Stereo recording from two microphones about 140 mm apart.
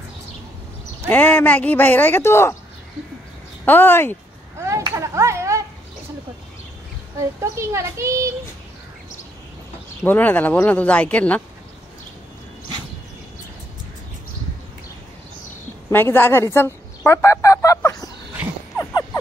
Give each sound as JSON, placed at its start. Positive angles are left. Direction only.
{"t": 1.0, "sound": "speech", "side_deg": 10}
{"t": 3.6, "sound": "speech", "side_deg": 15}
{"t": 4.6, "sound": "a sound", "side_deg": -20}
{"t": 4.9, "sound": "children playing", "side_deg": -20}
{"t": 7.5, "sound": "a child's voice", "side_deg": -20}
{"t": 10.0, "sound": "speech", "side_deg": 15}
{"t": 15.9, "sound": "speech", "side_deg": 15}